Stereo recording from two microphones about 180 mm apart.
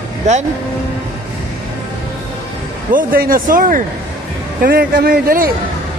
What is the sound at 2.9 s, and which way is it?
Speech, 50° right (ahead or behind).